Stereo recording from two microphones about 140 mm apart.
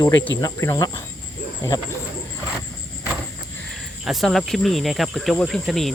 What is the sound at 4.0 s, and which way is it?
Speech, centre (ahead or behind).